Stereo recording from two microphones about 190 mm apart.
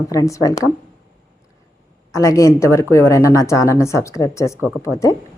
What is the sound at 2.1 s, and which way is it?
Speech, 15° left (ahead or behind).